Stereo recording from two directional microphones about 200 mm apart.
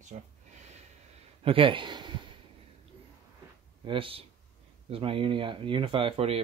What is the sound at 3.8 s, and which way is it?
Speech, 25° right (ahead or behind).